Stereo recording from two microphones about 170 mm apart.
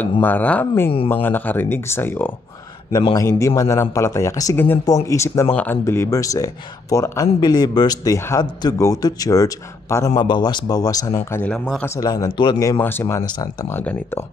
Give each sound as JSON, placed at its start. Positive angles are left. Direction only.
{"t": 0.2, "sound": "speech", "side_deg": 10}
{"t": 2.9, "sound": "speech", "side_deg": 30}
{"t": 3.2, "sound": "a man's voice", "side_deg": 15}
{"t": 11.8, "sound": "a man's voice", "side_deg": 20}